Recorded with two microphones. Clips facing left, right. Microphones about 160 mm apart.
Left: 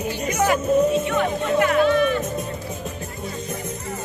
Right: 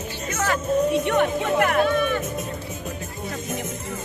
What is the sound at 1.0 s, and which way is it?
Speech, 55° right (ahead or behind).